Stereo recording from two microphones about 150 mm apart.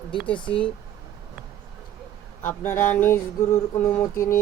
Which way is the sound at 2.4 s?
15° left (ahead or behind).